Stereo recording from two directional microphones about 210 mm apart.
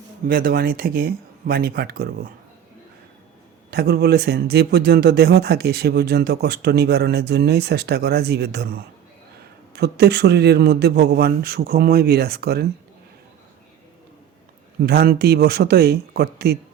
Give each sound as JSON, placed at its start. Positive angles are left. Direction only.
{"t": 0.3, "sound": "speech", "side_deg": -45}
{"t": 3.7, "sound": "speech", "side_deg": -50}
{"t": 9.7, "sound": "speech", "side_deg": -50}
{"t": 14.8, "sound": "speech", "side_deg": -50}